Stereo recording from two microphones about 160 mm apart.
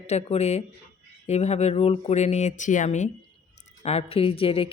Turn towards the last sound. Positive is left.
turn(degrees=35)  # may be behind; listen again after turning